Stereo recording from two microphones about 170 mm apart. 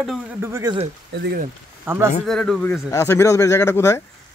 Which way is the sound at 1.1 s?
75° right (ahead or behind).